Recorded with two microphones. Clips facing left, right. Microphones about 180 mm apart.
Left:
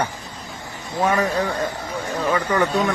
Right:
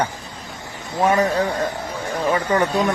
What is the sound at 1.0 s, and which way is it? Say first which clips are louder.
Speech: right 2 dB; 25° right (ahead or behind).